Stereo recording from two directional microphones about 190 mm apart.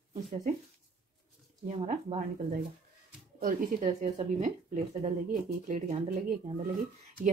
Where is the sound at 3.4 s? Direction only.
40° right (ahead or behind).